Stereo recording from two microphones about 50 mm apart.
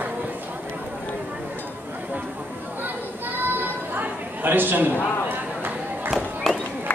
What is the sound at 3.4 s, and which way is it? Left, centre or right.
Chatter, right.